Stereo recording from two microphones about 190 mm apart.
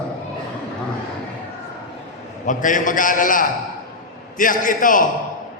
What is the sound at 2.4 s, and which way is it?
A man's voice, 45° left (ahead or behind).